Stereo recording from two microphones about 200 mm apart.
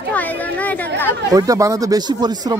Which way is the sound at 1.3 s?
20° right (ahead or behind).